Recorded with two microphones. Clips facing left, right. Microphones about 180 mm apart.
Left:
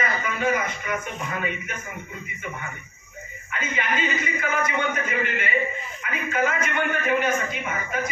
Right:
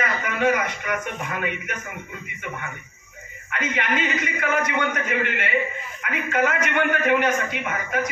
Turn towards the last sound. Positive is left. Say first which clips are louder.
# right 1 dB
turn(degrees=-65)  # may be behind; listen again after turning